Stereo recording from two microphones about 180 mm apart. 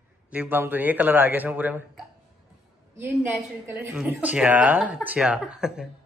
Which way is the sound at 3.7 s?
5° right (ahead or behind).